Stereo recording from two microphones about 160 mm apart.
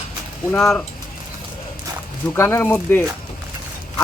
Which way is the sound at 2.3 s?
15° left (ahead or behind).